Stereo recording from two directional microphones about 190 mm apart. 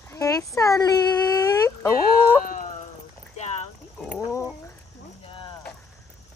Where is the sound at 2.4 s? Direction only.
45° left (ahead or behind).